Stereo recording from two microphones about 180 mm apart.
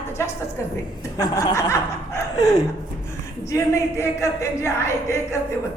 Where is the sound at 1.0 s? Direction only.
20° left (ahead or behind).